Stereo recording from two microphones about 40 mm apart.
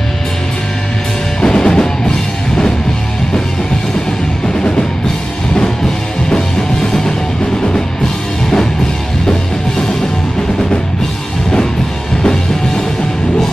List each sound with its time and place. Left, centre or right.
1.4 s music: centre
6.9 s music: centre
12.2 s music: centre